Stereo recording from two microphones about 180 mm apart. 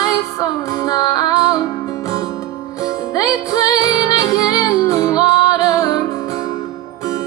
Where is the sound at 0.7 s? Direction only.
20° left (ahead or behind).